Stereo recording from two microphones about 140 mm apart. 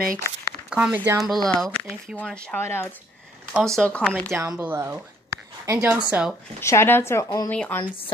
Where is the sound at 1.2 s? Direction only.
Centre (ahead or behind).